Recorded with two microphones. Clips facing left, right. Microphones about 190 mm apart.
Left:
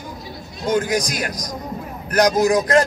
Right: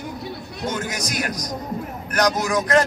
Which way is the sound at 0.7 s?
30° left (ahead or behind).